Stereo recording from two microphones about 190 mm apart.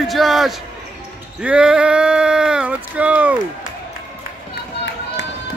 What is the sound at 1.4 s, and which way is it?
Speech, 5° right (ahead or behind).